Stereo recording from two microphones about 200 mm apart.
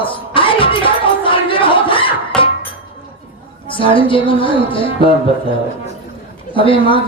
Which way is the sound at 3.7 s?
25° left (ahead or behind).